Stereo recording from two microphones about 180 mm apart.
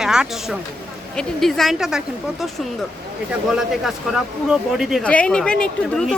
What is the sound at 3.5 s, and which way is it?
Speech, centre (ahead or behind).